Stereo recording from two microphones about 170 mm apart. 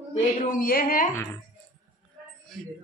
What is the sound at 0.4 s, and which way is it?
Speech, 55° left (ahead or behind).